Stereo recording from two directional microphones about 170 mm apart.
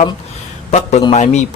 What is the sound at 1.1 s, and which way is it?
Speech, 45° left (ahead or behind).